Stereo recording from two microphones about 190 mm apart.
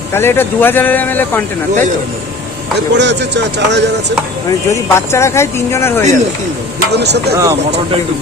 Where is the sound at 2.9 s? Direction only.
70° right (ahead or behind).